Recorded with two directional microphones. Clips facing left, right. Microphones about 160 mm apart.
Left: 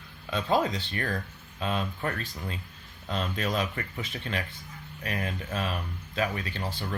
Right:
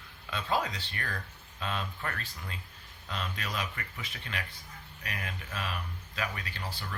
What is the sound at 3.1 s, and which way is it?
Speech, 30° left (ahead or behind).